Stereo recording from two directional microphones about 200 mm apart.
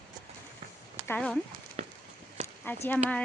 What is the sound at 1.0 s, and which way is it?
Speech, 5° left (ahead or behind).